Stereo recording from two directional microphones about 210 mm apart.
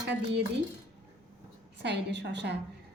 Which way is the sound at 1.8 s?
55° right (ahead or behind).